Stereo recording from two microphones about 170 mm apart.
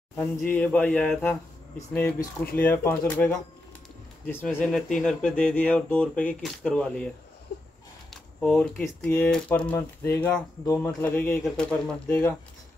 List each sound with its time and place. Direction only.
0.7 s speech: 5° left (ahead or behind)
1.8 s speech: 15° left (ahead or behind)
8.1 s a sound: 5° left (ahead or behind)
8.8 s speech: 10° left (ahead or behind)